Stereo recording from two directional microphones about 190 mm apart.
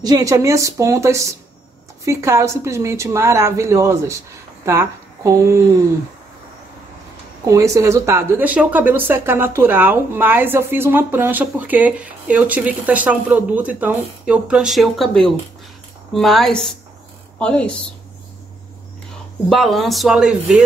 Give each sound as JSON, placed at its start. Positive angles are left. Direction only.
{"t": 0.0, "sound": "a woman's voice", "side_deg": -20}
{"t": 7.4, "sound": "speech", "side_deg": -15}
{"t": 19.5, "sound": "speech", "side_deg": 0}